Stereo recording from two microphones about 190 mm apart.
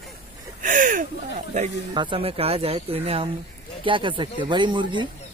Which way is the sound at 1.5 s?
40° right (ahead or behind).